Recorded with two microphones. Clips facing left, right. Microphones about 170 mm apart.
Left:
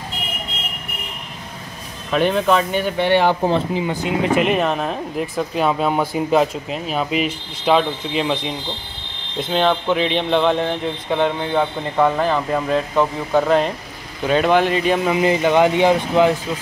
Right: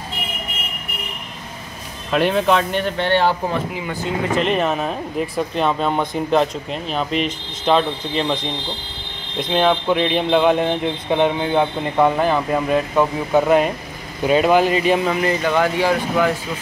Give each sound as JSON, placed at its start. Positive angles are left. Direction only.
{"t": 2.0, "sound": "speech", "side_deg": 0}
{"t": 3.5, "sound": "speech", "side_deg": 25}
{"t": 9.4, "sound": "speech", "side_deg": -5}
{"t": 15.1, "sound": "speech", "side_deg": 15}